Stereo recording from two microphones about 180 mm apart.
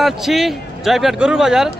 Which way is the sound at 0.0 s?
Centre (ahead or behind).